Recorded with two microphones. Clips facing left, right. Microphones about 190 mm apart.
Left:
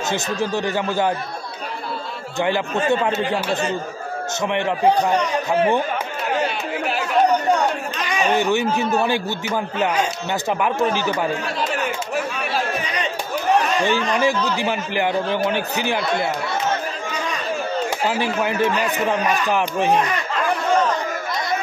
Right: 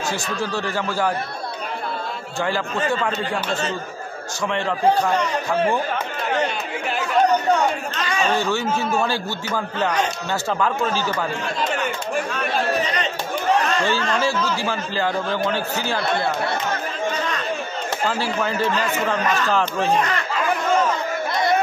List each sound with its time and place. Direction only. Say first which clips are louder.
0.1 s speech: left 5 dB; 20° left (ahead or behind)
2.4 s speech: left 3 dB; 20° left (ahead or behind)
4.5 s speech: left 1 dB; 15° left (ahead or behind)
8.0 s a man's voice: left 2 dB; 15° left (ahead or behind)
12.4 s chatter: right 2 dB; 5° left (ahead or behind)
13.7 s speech: left 2 dB; 15° left (ahead or behind)
18.0 s speech: even; 15° left (ahead or behind)